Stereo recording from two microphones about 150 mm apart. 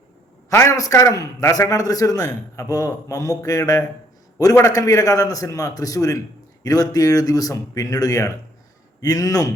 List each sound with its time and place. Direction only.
0.5 s a man's voice: 20° left (ahead or behind)